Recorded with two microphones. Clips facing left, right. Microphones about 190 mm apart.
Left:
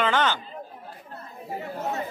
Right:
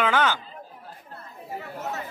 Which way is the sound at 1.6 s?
35° left (ahead or behind).